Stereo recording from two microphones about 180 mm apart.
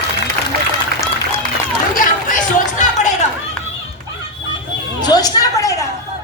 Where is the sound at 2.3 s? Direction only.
45° left (ahead or behind).